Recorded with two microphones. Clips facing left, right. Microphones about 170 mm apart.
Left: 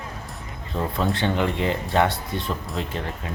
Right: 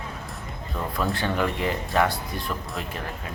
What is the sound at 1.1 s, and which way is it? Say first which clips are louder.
Speech: left 2 dB; 25° left (ahead or behind).